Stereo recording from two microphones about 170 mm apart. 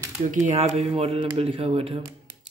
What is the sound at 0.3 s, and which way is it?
Speech, 45° right (ahead or behind).